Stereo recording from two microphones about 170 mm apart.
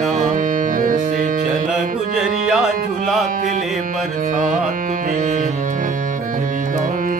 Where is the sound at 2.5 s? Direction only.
5° right (ahead or behind).